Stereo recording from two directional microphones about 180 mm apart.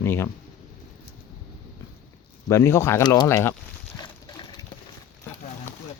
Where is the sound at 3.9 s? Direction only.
25° left (ahead or behind).